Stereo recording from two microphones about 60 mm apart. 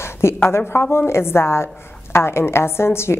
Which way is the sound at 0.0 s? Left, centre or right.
Left.